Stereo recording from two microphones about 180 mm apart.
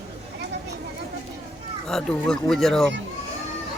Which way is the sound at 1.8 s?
5° left (ahead or behind).